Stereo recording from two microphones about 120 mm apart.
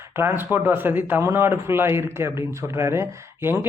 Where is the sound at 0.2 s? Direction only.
20° right (ahead or behind).